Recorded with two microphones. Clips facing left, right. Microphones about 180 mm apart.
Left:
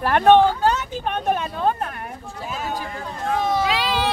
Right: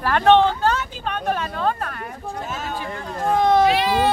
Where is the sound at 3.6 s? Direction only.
90° left.